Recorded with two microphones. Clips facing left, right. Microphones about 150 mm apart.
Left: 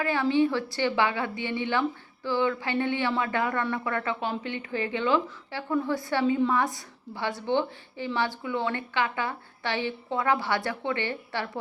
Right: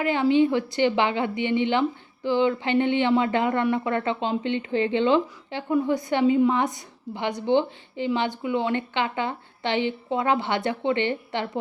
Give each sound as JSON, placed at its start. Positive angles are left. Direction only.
{"t": 0.0, "sound": "speech", "side_deg": -20}